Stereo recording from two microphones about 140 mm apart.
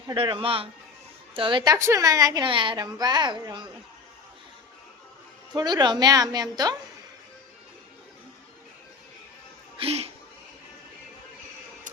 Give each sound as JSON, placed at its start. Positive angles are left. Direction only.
{"t": 0.1, "sound": "a man's voice", "side_deg": -40}
{"t": 1.7, "sound": "a woman's voice", "side_deg": -20}
{"t": 5.5, "sound": "a woman's voice", "side_deg": -30}
{"t": 9.7, "sound": "speech", "side_deg": -45}